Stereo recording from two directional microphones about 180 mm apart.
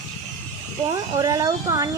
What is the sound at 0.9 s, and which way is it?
Speech, 20° right (ahead or behind).